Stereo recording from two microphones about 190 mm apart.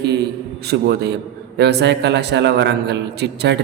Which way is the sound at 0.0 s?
60° right (ahead or behind).